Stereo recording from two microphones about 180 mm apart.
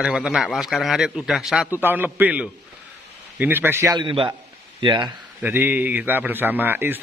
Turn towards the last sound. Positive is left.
turn(degrees=-10)  # may be behind; listen again after turning